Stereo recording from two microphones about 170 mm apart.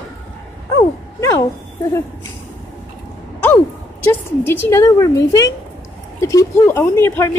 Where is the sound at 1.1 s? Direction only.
15° left (ahead or behind).